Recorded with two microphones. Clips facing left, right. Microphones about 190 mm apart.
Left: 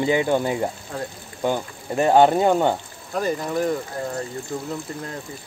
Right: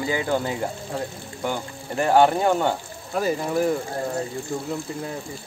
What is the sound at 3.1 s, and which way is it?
Speech, 5° right (ahead or behind).